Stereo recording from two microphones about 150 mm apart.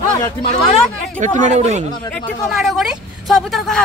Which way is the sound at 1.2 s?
55° right (ahead or behind).